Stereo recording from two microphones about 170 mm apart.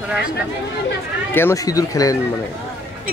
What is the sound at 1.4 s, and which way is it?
Speech, 15° left (ahead or behind).